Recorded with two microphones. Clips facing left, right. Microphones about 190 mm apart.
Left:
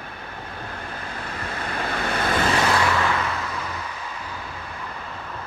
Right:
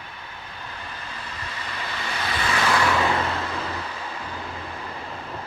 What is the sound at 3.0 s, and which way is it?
Vehicle, 25° right (ahead or behind).